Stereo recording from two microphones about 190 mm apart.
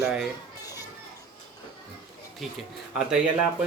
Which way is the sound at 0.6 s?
20° left (ahead or behind).